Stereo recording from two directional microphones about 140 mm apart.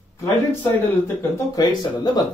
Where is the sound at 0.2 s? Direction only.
15° left (ahead or behind).